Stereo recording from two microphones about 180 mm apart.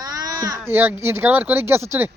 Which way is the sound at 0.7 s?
10° right (ahead or behind).